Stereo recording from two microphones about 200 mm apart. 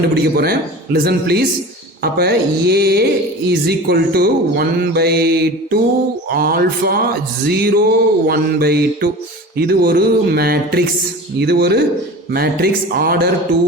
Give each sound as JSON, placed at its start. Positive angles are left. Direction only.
{"t": 0.1, "sound": "speech", "side_deg": -50}